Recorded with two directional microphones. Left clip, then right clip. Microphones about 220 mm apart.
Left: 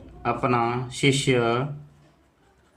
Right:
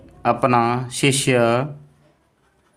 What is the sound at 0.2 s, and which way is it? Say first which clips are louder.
Speech: right 6 dB; 45° right (ahead or behind).